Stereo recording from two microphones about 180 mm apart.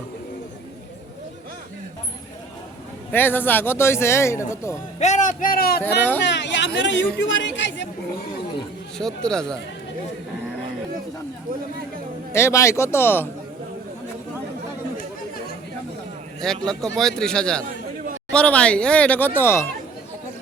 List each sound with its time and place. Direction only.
3.1 s speech: 10° left (ahead or behind)
4.9 s a man's voice: 40° left (ahead or behind)
6.2 s hubbub: 75° left (ahead or behind)
6.7 s speech: 90° left
9.0 s a man's voice: 5° left (ahead or behind)
12.3 s speech: 15° left (ahead or behind)
16.4 s a man's voice: 5° left (ahead or behind)